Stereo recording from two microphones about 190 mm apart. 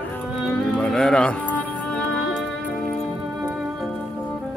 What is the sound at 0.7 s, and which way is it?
Music, 5° left (ahead or behind).